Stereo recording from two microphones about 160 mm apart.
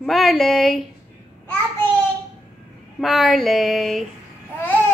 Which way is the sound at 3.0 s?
Centre (ahead or behind).